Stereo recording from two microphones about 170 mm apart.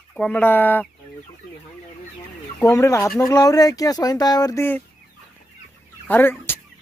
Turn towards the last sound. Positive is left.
turn(degrees=10)  # may be behind; listen again after turning